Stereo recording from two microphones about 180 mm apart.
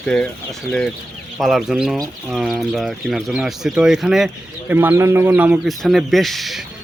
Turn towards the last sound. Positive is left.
turn(degrees=0)  # may be behind; listen again after turning